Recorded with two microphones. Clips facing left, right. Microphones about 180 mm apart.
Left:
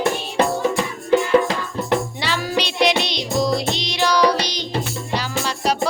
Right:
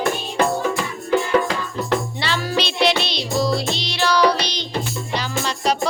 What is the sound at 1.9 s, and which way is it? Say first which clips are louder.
Music: left 1 dB; 10° left (ahead or behind).